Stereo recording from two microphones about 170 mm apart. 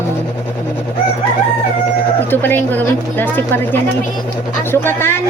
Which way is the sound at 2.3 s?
10° left (ahead or behind).